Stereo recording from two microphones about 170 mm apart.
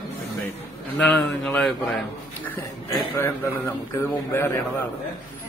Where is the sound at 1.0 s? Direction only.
5° left (ahead or behind).